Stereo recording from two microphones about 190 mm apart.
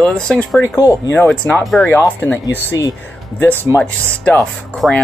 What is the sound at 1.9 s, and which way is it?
Speech, 10° left (ahead or behind).